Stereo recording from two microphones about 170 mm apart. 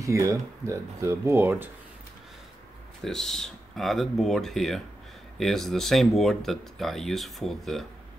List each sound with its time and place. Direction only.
0.0 s speech: 20° right (ahead or behind)
3.0 s speech: centre (ahead or behind)